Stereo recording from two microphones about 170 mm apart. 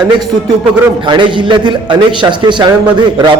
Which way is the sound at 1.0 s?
30° right (ahead or behind).